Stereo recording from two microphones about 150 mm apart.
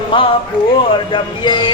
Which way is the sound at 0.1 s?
35° left (ahead or behind).